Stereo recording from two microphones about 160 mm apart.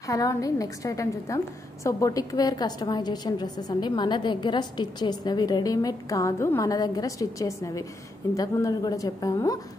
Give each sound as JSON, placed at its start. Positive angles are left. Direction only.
{"t": 0.0, "sound": "a woman's voice", "side_deg": 20}